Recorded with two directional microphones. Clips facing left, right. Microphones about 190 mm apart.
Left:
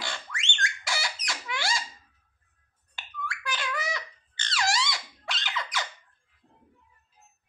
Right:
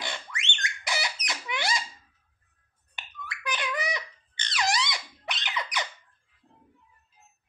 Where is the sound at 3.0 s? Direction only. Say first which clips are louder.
Left 4 dB; 20° right (ahead or behind).